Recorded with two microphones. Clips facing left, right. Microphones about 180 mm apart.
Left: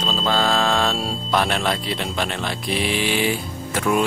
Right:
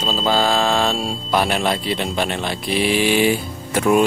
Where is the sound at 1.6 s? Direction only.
20° right (ahead or behind).